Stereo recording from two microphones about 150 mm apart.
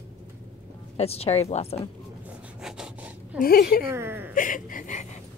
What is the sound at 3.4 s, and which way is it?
Speech, 85° left.